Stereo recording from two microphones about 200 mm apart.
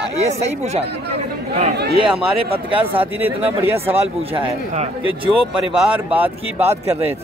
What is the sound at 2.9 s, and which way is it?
Speech, 10° right (ahead or behind).